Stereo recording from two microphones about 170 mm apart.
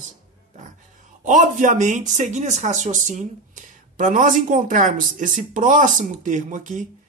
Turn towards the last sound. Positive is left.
turn(degrees=-50)  # may be behind; listen again after turning